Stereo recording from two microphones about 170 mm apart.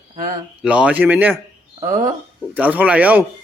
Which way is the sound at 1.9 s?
45° right (ahead or behind).